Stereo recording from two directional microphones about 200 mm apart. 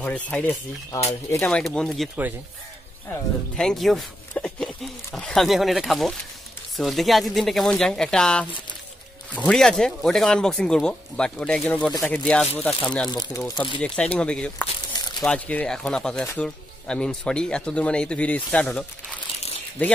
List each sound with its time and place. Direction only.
0.0 s speech: 5° left (ahead or behind)
3.5 s speech: centre (ahead or behind)
13.1 s speech: 20° left (ahead or behind)
13.4 s speech: 5° left (ahead or behind)
14.9 s crumpling: 20° left (ahead or behind)
15.2 s speech: 5° left (ahead or behind)